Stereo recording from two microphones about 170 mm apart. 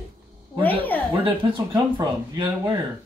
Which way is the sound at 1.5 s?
25° right (ahead or behind).